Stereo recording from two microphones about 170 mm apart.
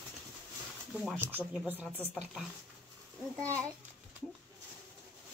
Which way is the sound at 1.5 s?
10° right (ahead or behind).